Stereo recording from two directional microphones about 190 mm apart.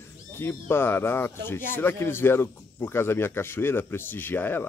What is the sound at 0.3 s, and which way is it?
Speech, 10° left (ahead or behind).